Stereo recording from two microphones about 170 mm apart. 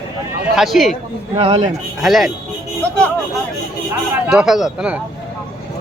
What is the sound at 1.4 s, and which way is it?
Speech, 35° right (ahead or behind).